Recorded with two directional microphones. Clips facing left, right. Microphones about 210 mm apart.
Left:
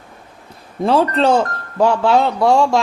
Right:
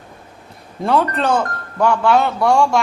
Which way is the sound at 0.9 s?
25° left (ahead or behind).